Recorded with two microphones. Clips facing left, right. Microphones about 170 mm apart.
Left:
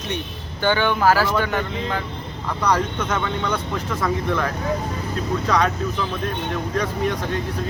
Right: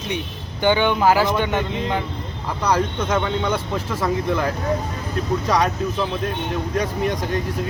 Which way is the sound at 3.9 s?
10° right (ahead or behind).